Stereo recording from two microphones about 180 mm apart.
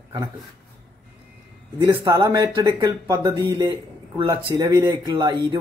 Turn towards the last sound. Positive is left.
turn(degrees=-25)  # may be behind; listen again after turning